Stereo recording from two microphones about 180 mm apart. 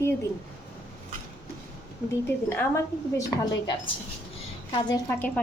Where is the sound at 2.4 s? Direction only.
15° left (ahead or behind).